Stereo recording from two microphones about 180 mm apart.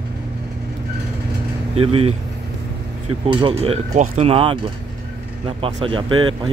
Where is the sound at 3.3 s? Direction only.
30° right (ahead or behind).